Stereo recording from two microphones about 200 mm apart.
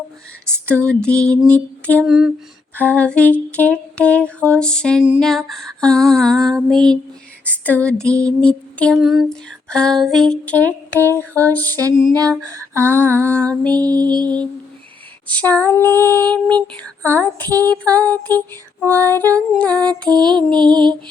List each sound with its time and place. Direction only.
0.9 s lullaby: 5° left (ahead or behind)
7.4 s female singing: 10° left (ahead or behind)
8.1 s lullaby: 5° left (ahead or behind)
12.1 s a sound: 20° right (ahead or behind)
12.8 s female singing: 10° left (ahead or behind)
13.7 s music: 20° right (ahead or behind)
15.3 s female singing: 5° left (ahead or behind)
17.5 s a sound: 15° right (ahead or behind)
17.8 s female singing: 5° left (ahead or behind)
19.5 s lullaby: 5° left (ahead or behind)
20.1 s music: 20° right (ahead or behind)